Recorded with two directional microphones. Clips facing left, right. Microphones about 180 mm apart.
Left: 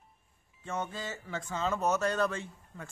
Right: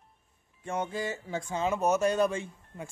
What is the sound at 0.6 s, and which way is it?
Speech, 15° right (ahead or behind).